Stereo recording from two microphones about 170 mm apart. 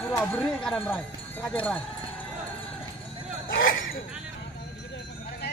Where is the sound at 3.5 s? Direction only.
90° left.